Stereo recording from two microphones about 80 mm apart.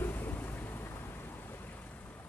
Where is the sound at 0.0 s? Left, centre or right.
Left.